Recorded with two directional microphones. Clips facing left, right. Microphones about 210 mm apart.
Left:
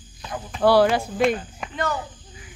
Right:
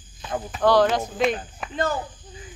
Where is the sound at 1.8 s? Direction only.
30° right (ahead or behind).